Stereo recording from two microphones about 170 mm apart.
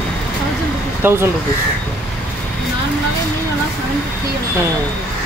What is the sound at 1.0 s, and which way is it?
Speech, 15° right (ahead or behind).